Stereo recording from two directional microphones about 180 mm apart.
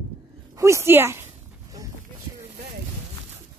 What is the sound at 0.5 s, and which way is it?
Speech, 15° right (ahead or behind).